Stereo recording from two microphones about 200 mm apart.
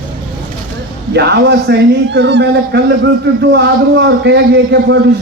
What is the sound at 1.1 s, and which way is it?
A man's voice, 55° right (ahead or behind).